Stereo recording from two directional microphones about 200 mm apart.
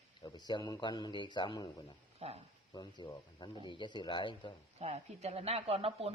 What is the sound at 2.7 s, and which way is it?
Speech, 20° left (ahead or behind).